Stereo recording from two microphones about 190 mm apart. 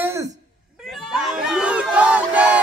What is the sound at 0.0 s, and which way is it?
Cough, 15° right (ahead or behind).